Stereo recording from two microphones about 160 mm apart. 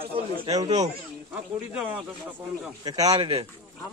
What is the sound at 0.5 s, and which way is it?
Speech, 25° right (ahead or behind).